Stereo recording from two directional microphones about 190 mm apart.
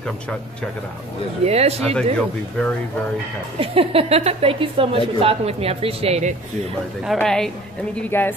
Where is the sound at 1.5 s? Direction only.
35° right (ahead or behind).